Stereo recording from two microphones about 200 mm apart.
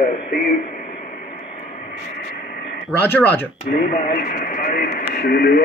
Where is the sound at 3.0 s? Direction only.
10° left (ahead or behind).